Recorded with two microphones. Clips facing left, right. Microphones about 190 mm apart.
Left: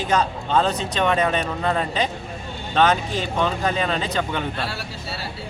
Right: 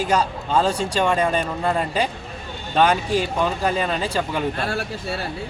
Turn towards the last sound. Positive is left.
turn(degrees=-50)  # may be behind; listen again after turning